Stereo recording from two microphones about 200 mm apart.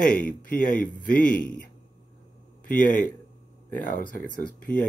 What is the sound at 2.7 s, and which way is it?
Speech, 40° left (ahead or behind).